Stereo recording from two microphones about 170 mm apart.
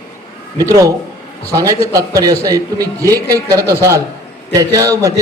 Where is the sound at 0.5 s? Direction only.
20° right (ahead or behind).